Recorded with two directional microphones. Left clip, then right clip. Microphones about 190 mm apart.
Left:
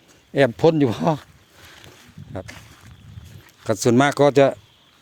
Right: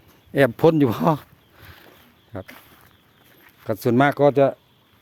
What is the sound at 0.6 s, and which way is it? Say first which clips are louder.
Speech: even; 15° right (ahead or behind).